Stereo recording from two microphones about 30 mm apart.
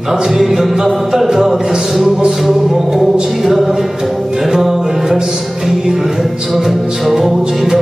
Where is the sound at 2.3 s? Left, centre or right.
Centre.